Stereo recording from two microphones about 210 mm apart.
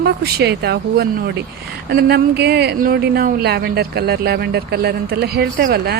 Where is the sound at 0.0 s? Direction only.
50° right (ahead or behind).